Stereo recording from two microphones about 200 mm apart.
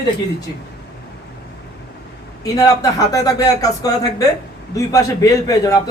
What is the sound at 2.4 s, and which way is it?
A man's voice, 15° left (ahead or behind).